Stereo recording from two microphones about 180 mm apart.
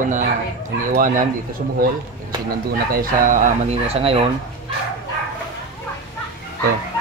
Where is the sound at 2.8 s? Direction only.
50° right (ahead or behind); by 4.1 s 35° right (ahead or behind).